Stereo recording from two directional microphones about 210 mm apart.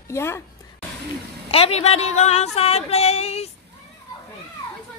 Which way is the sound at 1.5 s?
30° left (ahead or behind).